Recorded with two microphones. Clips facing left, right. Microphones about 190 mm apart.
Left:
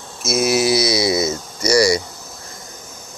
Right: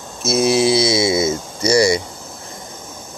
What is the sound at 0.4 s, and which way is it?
Cattle, 25° right (ahead or behind).